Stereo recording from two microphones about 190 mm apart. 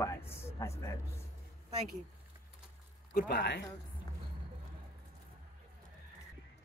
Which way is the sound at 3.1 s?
60° left (ahead or behind).